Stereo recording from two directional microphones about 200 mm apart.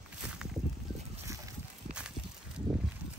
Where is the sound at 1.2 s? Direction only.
15° right (ahead or behind).